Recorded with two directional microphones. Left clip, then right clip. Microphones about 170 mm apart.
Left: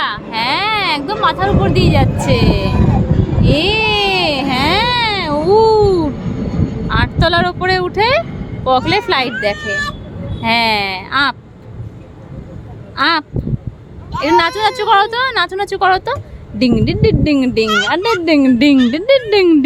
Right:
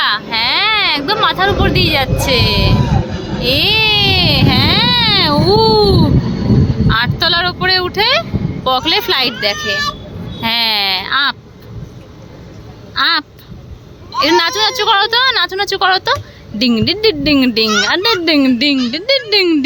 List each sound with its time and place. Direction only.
0.0 s a sound: centre (ahead or behind)
2.1 s speech: 10° left (ahead or behind)
3.4 s baby cry: 5° left (ahead or behind)
6.8 s speech: 10° left (ahead or behind)
13.0 s speech: 10° left (ahead or behind)
18.6 s speech: 20° left (ahead or behind)